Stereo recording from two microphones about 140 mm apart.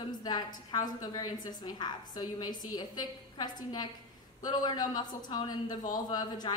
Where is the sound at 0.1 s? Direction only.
30° left (ahead or behind).